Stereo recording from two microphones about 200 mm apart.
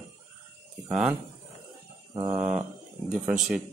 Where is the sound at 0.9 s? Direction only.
5° right (ahead or behind).